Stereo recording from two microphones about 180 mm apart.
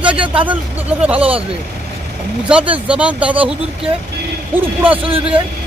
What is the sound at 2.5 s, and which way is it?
Speech, 5° right (ahead or behind).